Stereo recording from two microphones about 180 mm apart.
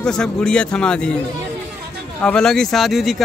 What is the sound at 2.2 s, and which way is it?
Speech, 5° left (ahead or behind).